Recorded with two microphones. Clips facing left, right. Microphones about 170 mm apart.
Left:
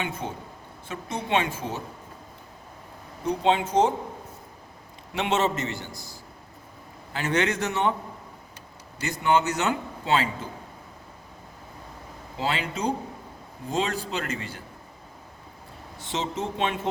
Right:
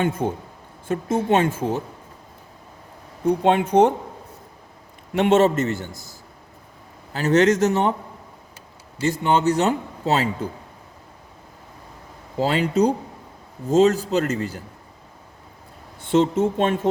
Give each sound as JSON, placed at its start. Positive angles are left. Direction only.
{"t": 0.0, "sound": "a man's voice", "side_deg": -50}
{"t": 3.2, "sound": "speech", "side_deg": -55}
{"t": 5.1, "sound": "a man's voice", "side_deg": -50}
{"t": 9.0, "sound": "a man's voice", "side_deg": -30}
{"t": 12.4, "sound": "a man's voice", "side_deg": -40}
{"t": 16.1, "sound": "a man's voice", "side_deg": -55}